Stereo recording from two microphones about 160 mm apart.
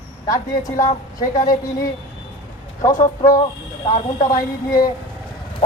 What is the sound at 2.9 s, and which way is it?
Speech, 55° left (ahead or behind).